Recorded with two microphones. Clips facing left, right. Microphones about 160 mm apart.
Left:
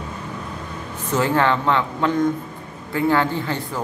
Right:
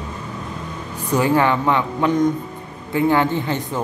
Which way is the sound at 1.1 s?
15° right (ahead or behind).